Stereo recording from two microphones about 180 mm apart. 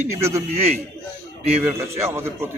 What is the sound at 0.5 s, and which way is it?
Speech, 35° right (ahead or behind).